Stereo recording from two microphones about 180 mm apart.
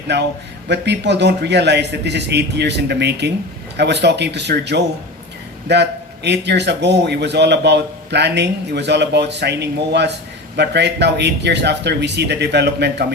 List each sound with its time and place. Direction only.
0.1 s a man's voice: 70° right (ahead or behind)